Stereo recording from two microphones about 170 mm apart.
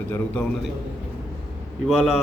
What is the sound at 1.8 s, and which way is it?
Speech, 5° left (ahead or behind).